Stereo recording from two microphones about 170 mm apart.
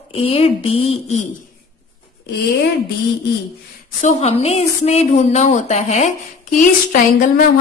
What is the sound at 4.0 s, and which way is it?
A woman's voice, 40° left (ahead or behind).